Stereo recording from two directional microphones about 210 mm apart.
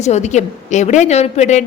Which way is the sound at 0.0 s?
35° left (ahead or behind).